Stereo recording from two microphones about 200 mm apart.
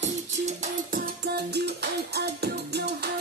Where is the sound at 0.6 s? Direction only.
45° right (ahead or behind).